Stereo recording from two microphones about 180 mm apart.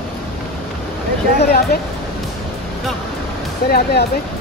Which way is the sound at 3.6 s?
60° left (ahead or behind).